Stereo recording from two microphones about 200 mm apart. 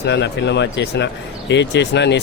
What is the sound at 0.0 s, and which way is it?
Speech, 60° left (ahead or behind).